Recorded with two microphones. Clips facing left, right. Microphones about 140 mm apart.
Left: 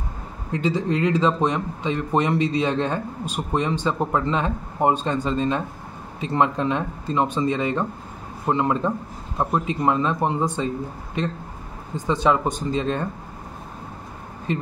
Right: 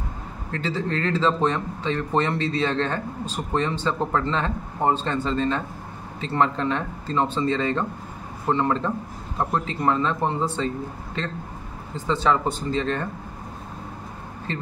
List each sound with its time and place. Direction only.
0.5 s speech: 15° left (ahead or behind)
14.5 s speech: 15° left (ahead or behind)